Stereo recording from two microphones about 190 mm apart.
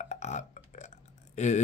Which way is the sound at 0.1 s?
40° left (ahead or behind).